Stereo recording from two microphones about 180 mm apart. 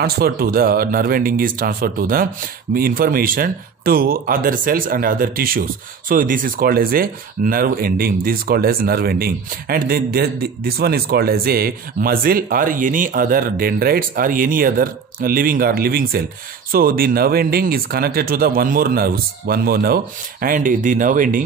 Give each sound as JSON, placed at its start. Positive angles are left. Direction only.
{"t": 0.0, "sound": "speech", "side_deg": -55}